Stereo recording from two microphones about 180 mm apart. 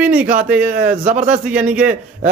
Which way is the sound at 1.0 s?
45° right (ahead or behind).